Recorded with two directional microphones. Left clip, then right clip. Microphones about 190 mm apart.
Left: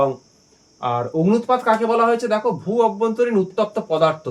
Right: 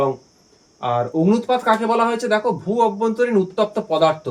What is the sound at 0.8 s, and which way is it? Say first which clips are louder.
Speech: right 1 dB; 30° left (ahead or behind).